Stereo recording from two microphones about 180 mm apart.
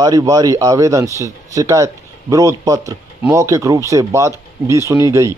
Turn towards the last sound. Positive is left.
turn(degrees=-15)  # may be behind; listen again after turning